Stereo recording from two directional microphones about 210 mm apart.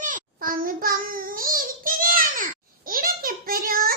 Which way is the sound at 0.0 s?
40° right (ahead or behind).